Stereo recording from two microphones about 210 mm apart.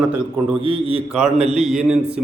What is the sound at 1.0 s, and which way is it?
Speech, 5° right (ahead or behind).